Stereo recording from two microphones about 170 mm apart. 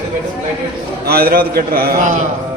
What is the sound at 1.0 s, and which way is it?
A man's voice, 65° right (ahead or behind).